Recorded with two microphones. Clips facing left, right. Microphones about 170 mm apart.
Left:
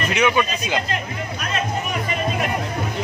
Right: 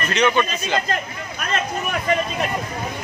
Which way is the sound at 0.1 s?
10° left (ahead or behind).